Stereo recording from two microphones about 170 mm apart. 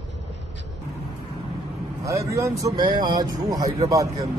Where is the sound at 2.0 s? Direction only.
20° right (ahead or behind).